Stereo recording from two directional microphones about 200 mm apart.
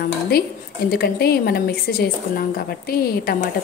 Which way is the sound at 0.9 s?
50° left (ahead or behind).